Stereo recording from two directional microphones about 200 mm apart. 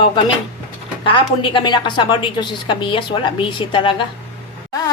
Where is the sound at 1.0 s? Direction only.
25° left (ahead or behind).